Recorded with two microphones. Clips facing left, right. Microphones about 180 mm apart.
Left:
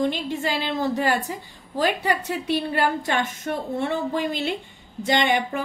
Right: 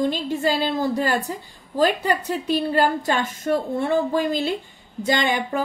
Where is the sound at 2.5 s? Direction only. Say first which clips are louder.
Right 3 dB; 40° right (ahead or behind).